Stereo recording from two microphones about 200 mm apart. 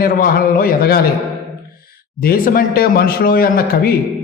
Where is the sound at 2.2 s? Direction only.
45° left (ahead or behind).